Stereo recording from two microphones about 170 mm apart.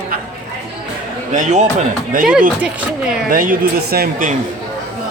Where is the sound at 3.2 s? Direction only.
55° right (ahead or behind).